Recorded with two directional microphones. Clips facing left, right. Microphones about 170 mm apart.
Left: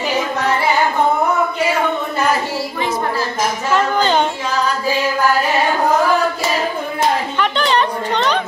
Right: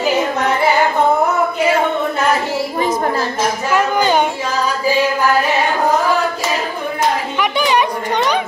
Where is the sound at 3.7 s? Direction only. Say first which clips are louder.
Right 1 dB; 10° right (ahead or behind).